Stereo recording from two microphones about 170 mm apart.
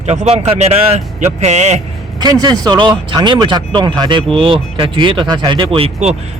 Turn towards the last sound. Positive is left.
turn(degrees=-40)  # may be behind; listen again after turning